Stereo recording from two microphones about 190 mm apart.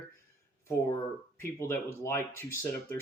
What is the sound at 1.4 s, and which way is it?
Speech, 15° left (ahead or behind).